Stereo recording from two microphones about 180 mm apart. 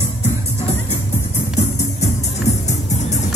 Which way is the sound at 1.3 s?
35° left (ahead or behind).